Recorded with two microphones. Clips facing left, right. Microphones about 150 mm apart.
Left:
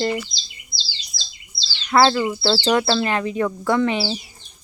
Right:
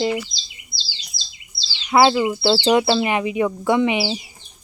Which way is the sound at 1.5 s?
15° right (ahead or behind).